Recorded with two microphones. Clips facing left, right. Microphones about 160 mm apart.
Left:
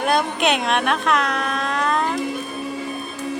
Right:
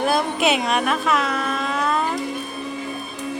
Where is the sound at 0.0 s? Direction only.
Centre (ahead or behind).